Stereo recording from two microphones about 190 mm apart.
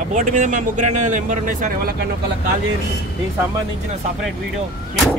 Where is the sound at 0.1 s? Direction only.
40° right (ahead or behind).